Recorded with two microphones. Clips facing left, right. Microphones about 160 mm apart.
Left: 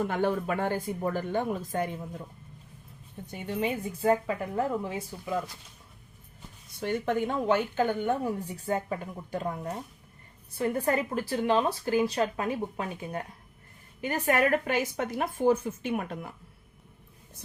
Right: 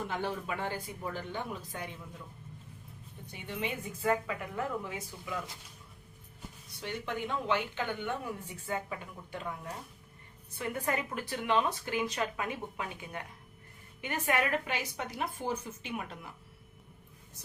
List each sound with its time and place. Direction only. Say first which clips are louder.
0.1 s speech: left 8 dB; 50° left (ahead or behind)
3.3 s speech: left 7 dB; 40° left (ahead or behind)
6.7 s speech: left 9 dB; 50° left (ahead or behind)